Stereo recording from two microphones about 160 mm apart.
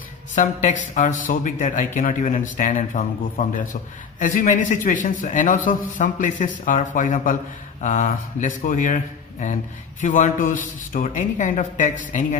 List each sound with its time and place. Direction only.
0.3 s a man's voice: 50° left (ahead or behind)